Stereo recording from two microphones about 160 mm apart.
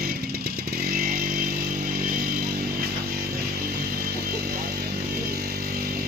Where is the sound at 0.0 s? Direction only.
65° right (ahead or behind).